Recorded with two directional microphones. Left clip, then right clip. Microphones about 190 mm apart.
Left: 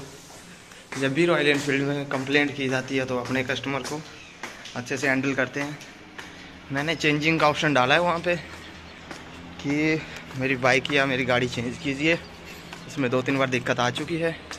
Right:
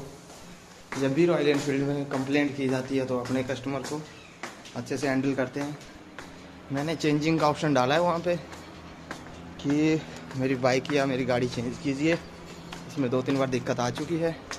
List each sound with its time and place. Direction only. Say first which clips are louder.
1.0 s a man's voice: left 2 dB; centre (ahead or behind)
6.7 s speech: left 3 dB; 5° right (ahead or behind)
9.6 s speech: left 1 dB; 15° right (ahead or behind)
12.9 s a man's voice: left 3 dB; 5° left (ahead or behind)